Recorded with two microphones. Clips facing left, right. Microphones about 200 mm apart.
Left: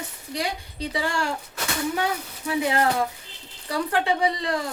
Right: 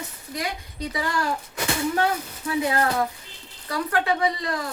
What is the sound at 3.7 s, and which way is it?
Speech, 30° left (ahead or behind).